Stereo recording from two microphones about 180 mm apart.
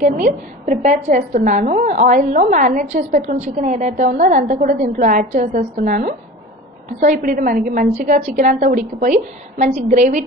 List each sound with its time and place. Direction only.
0.0 s a woman's voice: 45° right (ahead or behind)